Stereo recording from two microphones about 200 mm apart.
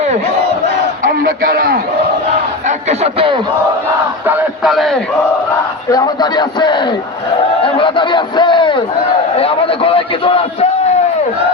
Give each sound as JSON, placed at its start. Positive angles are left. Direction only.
{"t": 1.2, "sound": "a man's voice", "side_deg": -50}
{"t": 2.6, "sound": "speech", "side_deg": -30}
{"t": 4.3, "sound": "speech", "side_deg": -5}
{"t": 5.9, "sound": "a man's voice", "side_deg": 20}